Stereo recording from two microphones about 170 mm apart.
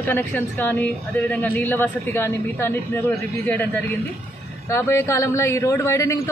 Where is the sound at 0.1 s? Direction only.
10° left (ahead or behind).